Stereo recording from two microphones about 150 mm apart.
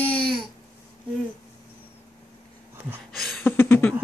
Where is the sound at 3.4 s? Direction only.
10° left (ahead or behind).